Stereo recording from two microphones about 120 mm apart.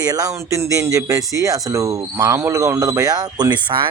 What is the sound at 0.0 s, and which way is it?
Speech, 30° right (ahead or behind).